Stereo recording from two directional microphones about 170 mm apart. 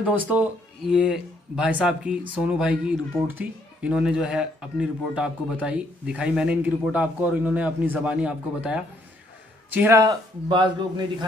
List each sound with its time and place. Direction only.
0.0 s speech: 10° right (ahead or behind)
9.8 s a man's voice: 15° right (ahead or behind)